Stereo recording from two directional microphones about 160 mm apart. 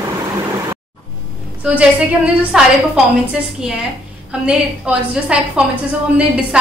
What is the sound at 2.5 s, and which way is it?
A woman's voice, 5° right (ahead or behind).